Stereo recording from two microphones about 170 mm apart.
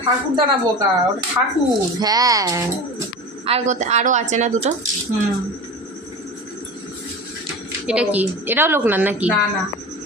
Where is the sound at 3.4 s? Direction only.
40° right (ahead or behind).